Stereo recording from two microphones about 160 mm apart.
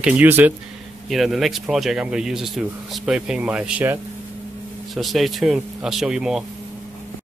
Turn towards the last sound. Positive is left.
turn(degrees=-5)  # may be behind; listen again after turning